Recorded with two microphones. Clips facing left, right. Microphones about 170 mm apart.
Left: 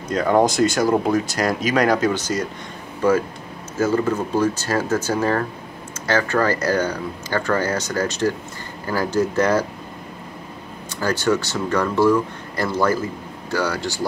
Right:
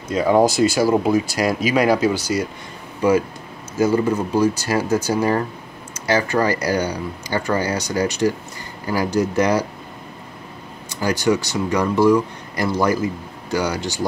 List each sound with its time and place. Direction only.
0.1 s speech: 5° right (ahead or behind)
3.7 s speech: 15° right (ahead or behind)
11.0 s speech: 15° right (ahead or behind)